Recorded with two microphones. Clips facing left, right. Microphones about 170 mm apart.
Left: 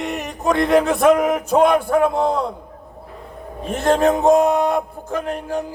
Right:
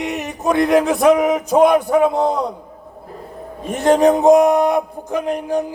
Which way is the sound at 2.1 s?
15° right (ahead or behind).